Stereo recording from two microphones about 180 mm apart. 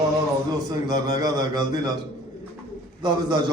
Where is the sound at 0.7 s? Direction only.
20° right (ahead or behind).